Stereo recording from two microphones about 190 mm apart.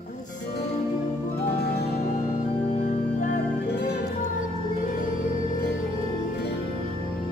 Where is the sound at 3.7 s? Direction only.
60° left (ahead or behind).